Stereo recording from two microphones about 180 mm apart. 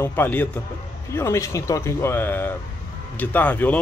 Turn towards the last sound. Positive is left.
turn(degrees=10)  # may be behind; listen again after turning